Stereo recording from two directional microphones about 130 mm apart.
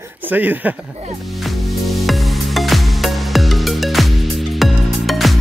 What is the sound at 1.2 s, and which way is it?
Music, centre (ahead or behind).